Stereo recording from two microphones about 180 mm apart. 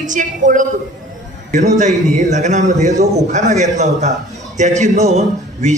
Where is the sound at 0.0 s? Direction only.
45° right (ahead or behind).